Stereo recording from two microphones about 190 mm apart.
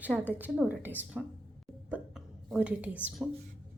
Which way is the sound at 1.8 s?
5° right (ahead or behind).